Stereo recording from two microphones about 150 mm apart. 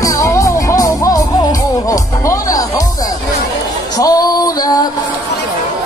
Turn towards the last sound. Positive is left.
turn(degrees=25)  # may be behind; listen again after turning